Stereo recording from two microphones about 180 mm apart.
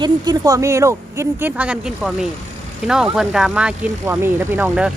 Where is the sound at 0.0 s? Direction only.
20° right (ahead or behind).